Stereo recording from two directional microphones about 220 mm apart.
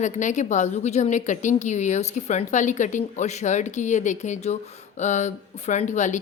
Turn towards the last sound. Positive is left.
turn(degrees=35)  # may be behind; listen again after turning